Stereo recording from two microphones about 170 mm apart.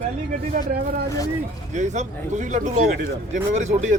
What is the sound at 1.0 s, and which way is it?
Speech, 20° left (ahead or behind).